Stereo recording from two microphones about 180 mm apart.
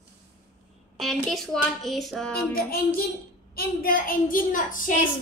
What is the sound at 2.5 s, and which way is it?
A woman's voice, 55° left (ahead or behind).